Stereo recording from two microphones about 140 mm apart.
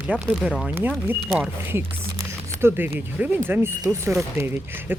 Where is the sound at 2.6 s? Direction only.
15° right (ahead or behind).